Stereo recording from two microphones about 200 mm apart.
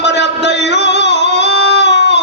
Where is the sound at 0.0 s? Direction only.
60° left (ahead or behind).